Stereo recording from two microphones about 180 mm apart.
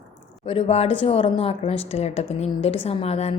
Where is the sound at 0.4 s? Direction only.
35° left (ahead or behind).